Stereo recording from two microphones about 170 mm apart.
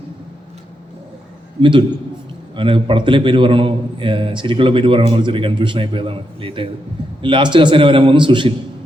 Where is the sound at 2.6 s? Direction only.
30° right (ahead or behind).